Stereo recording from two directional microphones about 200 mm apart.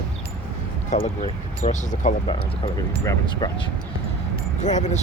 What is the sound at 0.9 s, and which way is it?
Speech, 35° left (ahead or behind).